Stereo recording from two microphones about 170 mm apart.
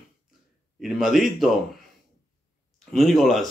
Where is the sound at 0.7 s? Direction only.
Centre (ahead or behind).